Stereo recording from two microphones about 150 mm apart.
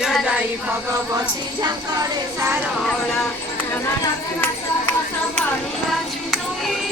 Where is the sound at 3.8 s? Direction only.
15° left (ahead or behind).